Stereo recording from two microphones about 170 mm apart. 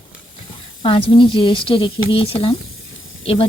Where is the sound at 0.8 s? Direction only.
30° left (ahead or behind).